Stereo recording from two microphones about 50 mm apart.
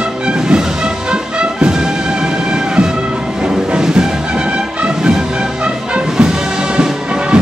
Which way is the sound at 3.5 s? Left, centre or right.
Centre.